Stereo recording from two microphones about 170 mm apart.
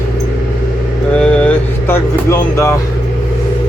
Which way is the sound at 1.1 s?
5° left (ahead or behind).